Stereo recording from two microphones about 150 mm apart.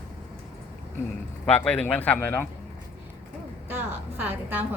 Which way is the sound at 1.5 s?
10° left (ahead or behind).